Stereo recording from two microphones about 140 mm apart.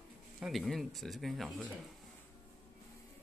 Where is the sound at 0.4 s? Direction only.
Centre (ahead or behind).